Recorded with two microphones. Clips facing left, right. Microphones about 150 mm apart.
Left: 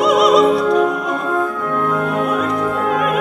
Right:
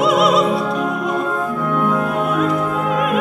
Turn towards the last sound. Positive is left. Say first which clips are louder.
# left 1 dB
turn(degrees=0)  # may be behind; listen again after turning